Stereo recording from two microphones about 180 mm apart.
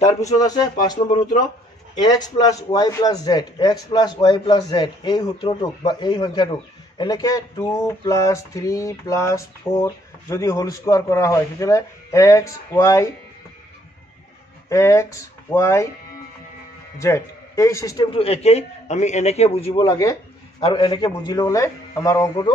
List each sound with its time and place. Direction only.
0.4 s speech: 20° left (ahead or behind)
0.9 s speech: 45° left (ahead or behind)
2.0 s speech: 20° left (ahead or behind)
14.7 s speech: 15° left (ahead or behind)
17.0 s a man's voice: 15° left (ahead or behind)
18.1 s a man's voice: 35° left (ahead or behind)
19.9 s speech: 15° left (ahead or behind)